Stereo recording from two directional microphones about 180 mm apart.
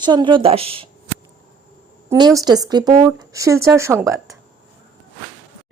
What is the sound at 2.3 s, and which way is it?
Speech, 20° right (ahead or behind).